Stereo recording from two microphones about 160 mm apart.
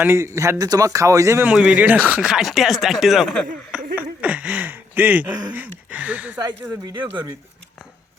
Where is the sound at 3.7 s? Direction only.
5° right (ahead or behind).